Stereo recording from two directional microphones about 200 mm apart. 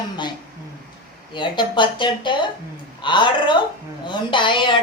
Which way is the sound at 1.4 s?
25° left (ahead or behind).